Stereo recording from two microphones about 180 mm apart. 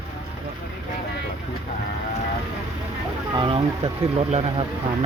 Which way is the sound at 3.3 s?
25° right (ahead or behind).